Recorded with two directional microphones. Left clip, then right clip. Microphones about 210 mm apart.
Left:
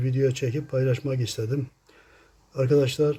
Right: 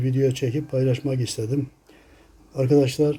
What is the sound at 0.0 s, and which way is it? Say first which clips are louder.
A man's voice: right 2 dB; 5° left (ahead or behind).